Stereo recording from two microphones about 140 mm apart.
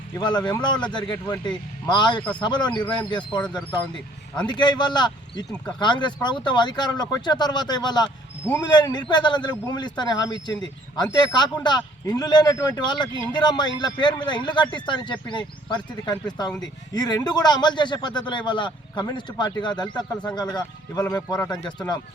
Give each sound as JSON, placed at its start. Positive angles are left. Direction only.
{"t": 0.2, "sound": "speech", "side_deg": 30}
{"t": 4.4, "sound": "speech", "side_deg": 30}